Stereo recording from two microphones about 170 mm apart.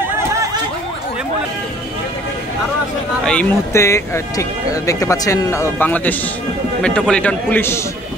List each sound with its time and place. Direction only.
3.3 s speech: 10° left (ahead or behind)